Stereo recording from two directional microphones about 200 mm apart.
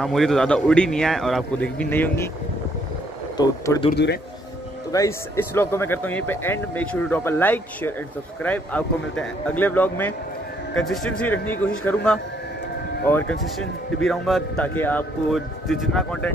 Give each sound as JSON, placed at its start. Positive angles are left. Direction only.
{"t": 0.0, "sound": "a man's voice", "side_deg": 0}
{"t": 3.3, "sound": "speech", "side_deg": 20}
{"t": 4.9, "sound": "a man's voice", "side_deg": 15}